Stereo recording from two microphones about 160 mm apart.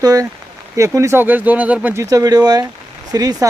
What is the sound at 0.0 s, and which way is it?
Speech, 20° right (ahead or behind).